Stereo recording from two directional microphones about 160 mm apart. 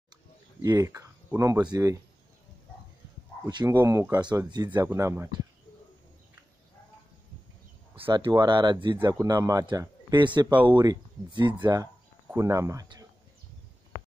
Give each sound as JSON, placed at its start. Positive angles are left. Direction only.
{"t": 0.6, "sound": "a man's voice", "side_deg": -20}
{"t": 3.4, "sound": "a man's voice", "side_deg": -25}
{"t": 4.8, "sound": "speech", "side_deg": -15}
{"t": 7.9, "sound": "a man's voice", "side_deg": -35}